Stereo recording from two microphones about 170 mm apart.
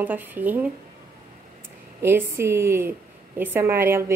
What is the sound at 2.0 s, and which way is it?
A woman's voice, 15° right (ahead or behind).